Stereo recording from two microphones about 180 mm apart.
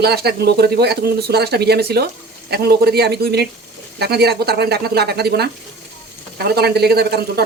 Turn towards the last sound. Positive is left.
turn(degrees=-65)  # may be behind; listen again after turning